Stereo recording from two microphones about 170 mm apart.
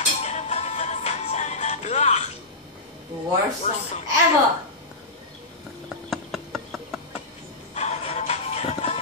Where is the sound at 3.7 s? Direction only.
40° left (ahead or behind).